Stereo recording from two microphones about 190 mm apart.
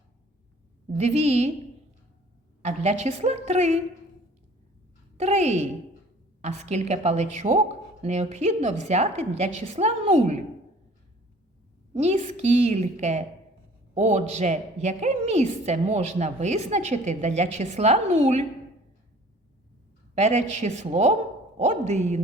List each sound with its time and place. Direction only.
0.9 s a woman's voice: 35° right (ahead or behind)
2.6 s a woman's voice: 35° right (ahead or behind)
5.1 s a woman's voice: 35° right (ahead or behind)
11.9 s a woman's voice: 35° right (ahead or behind)
20.1 s a woman's voice: 35° right (ahead or behind)